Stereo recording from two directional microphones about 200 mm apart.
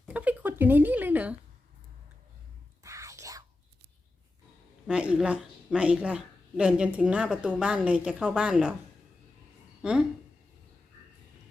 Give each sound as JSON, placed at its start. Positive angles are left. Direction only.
{"t": 0.0, "sound": "a sound", "side_deg": -5}
{"t": 2.8, "sound": "whispering", "side_deg": -15}
{"t": 4.9, "sound": "a woman's voice", "side_deg": -5}
{"t": 9.8, "sound": "speech", "side_deg": -5}